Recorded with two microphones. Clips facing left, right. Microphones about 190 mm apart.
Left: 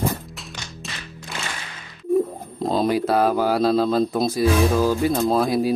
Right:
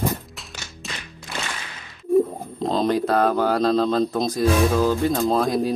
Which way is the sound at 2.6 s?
10° left (ahead or behind).